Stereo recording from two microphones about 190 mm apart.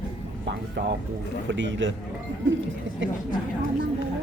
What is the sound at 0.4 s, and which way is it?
Speech, 60° right (ahead or behind).